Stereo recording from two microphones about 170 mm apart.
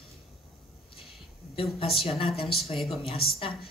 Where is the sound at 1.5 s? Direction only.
35° left (ahead or behind).